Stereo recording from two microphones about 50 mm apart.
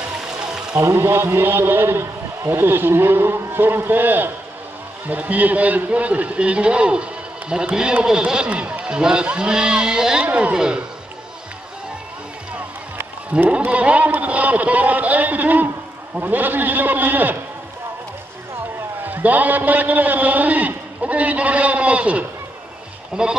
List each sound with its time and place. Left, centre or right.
0.4 s a sound: centre
0.7 s a man's voice: right; by 10.8 s centre
13.3 s a man's voice: right
19.0 s a man's voice: right; by 23.3 s centre